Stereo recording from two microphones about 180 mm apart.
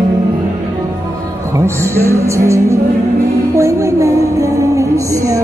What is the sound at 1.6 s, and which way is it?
Music, 15° right (ahead or behind).